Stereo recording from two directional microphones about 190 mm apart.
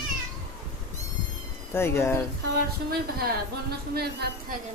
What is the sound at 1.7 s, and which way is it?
Speech, 10° left (ahead or behind).